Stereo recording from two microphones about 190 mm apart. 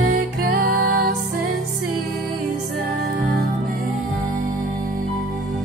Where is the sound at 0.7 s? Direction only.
60° right (ahead or behind).